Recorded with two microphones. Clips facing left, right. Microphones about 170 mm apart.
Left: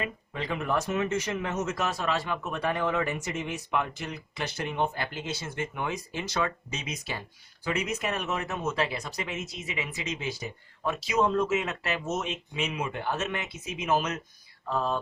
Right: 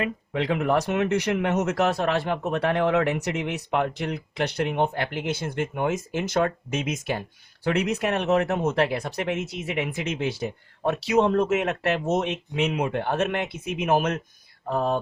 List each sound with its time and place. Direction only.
0.0 s speech: 65° right (ahead or behind)